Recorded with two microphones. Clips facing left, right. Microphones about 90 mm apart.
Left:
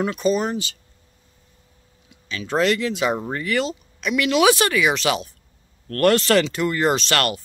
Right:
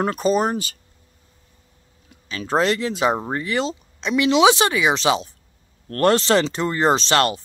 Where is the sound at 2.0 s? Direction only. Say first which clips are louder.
Right 2 dB; 40° right (ahead or behind).